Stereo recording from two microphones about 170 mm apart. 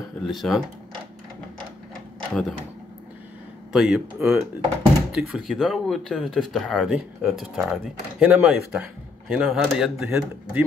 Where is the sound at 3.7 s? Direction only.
5° right (ahead or behind).